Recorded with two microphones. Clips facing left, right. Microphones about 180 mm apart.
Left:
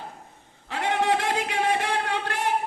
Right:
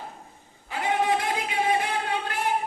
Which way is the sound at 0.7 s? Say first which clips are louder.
Left 1 dB; 75° left (ahead or behind).